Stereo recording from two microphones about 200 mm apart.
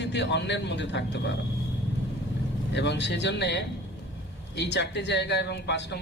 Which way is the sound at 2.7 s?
60° left (ahead or behind).